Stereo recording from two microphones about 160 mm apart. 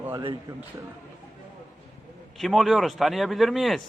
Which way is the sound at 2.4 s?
Centre (ahead or behind).